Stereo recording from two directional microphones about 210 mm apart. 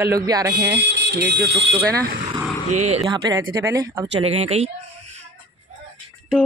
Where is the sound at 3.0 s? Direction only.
15° right (ahead or behind).